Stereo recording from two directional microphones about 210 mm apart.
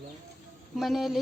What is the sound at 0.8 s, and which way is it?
Speech, centre (ahead or behind).